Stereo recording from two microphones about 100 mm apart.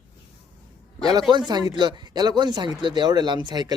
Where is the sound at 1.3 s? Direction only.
45° right (ahead or behind).